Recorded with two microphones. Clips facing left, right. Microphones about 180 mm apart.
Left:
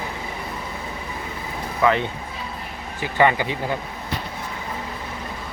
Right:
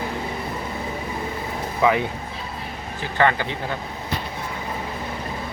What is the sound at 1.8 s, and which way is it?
Speech, 10° right (ahead or behind).